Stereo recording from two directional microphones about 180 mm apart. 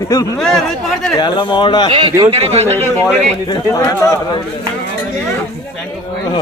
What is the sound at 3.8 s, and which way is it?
Speech, 15° left (ahead or behind).